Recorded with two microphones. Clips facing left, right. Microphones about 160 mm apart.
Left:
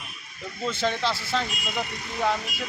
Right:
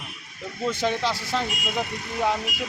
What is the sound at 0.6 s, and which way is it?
Speech, 15° right (ahead or behind).